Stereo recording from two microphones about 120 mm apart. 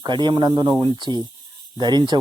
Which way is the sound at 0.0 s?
40° right (ahead or behind).